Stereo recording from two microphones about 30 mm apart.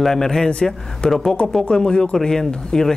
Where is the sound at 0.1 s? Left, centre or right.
Centre.